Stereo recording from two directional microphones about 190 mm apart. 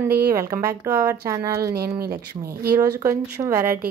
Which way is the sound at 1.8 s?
55° right (ahead or behind).